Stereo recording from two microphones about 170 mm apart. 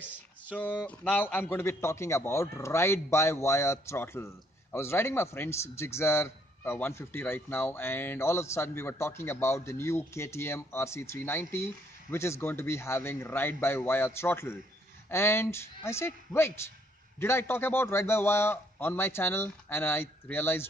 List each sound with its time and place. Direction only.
0.5 s speech: 10° left (ahead or behind)